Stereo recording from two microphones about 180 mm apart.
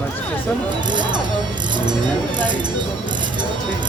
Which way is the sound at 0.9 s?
25° right (ahead or behind).